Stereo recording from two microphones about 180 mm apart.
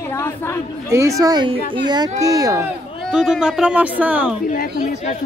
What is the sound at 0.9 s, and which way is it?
Speech, 15° right (ahead or behind).